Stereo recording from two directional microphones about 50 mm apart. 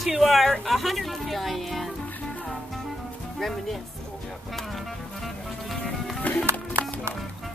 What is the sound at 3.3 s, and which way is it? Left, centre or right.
Speech, centre.